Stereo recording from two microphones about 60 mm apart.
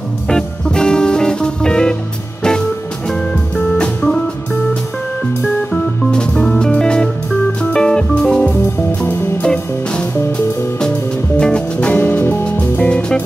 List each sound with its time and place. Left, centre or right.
0.3 s music: centre
3.7 s music: centre
5.7 s music: centre
11.9 s music: left